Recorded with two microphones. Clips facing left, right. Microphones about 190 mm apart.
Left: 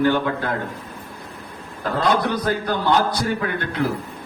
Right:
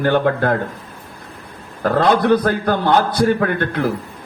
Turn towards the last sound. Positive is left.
turn(degrees=-55)  # may be behind; listen again after turning